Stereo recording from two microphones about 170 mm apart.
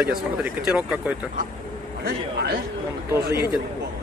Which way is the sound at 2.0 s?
60° right (ahead or behind).